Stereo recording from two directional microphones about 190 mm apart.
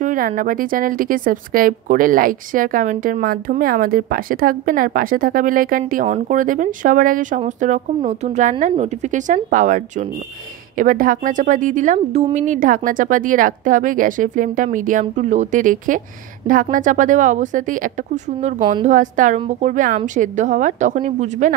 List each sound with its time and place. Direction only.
0.0 s a woman's voice: 45° right (ahead or behind)